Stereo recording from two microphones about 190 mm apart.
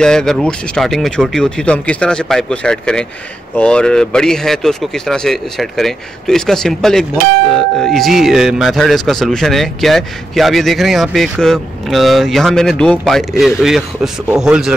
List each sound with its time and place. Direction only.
0.0 s speech: 5° left (ahead or behind)